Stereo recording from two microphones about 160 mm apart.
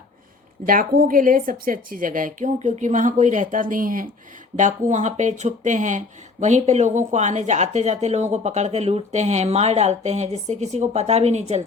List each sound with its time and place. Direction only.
0.6 s speech: 60° right (ahead or behind); by 11.6 s 45° right (ahead or behind)